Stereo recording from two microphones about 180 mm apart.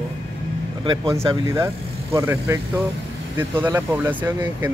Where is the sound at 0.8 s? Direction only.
20° right (ahead or behind).